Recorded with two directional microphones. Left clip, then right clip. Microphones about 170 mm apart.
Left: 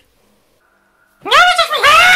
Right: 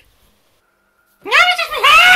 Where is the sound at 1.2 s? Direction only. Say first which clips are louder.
Left 3 dB; 20° left (ahead or behind).